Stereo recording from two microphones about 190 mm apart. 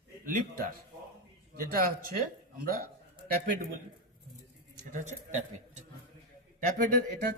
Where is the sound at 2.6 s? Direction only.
50° right (ahead or behind).